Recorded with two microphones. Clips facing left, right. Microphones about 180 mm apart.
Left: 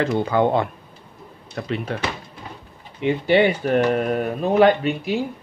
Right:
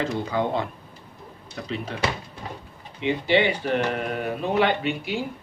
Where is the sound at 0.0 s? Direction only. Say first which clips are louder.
Left 6 dB; 60° left (ahead or behind).